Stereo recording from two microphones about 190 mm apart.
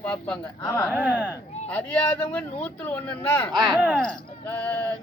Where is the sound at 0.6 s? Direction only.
15° left (ahead or behind).